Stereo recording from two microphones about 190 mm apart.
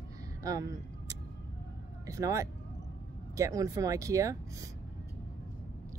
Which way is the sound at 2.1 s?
15° right (ahead or behind).